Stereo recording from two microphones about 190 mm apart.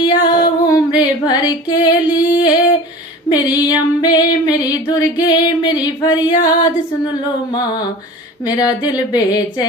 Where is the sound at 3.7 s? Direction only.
20° left (ahead or behind).